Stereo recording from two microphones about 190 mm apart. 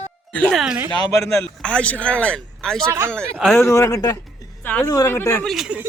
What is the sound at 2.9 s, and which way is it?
Speech, 15° right (ahead or behind).